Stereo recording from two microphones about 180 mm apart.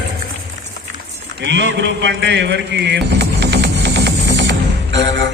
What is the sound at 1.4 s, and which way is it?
Mantra, 80° right.